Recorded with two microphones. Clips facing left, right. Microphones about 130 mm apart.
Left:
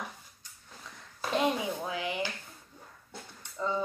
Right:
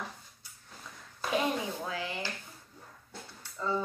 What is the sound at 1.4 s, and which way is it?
Drawer open or close, 20° left (ahead or behind).